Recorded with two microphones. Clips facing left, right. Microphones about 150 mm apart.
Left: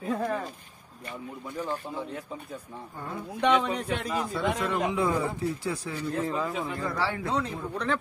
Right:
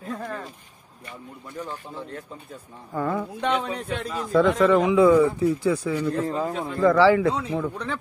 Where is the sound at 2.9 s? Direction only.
90° right.